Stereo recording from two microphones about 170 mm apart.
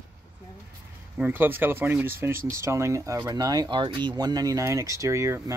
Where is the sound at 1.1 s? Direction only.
10° right (ahead or behind).